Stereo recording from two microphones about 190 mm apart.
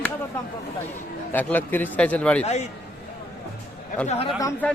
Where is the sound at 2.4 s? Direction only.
35° left (ahead or behind).